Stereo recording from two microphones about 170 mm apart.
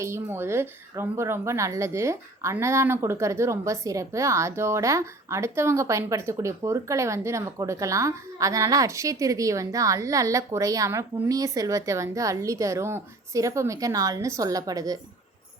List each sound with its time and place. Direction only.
0.0 s speech: 15° right (ahead or behind)